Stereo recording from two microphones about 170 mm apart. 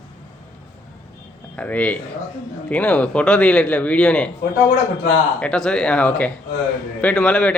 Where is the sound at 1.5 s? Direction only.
10° left (ahead or behind).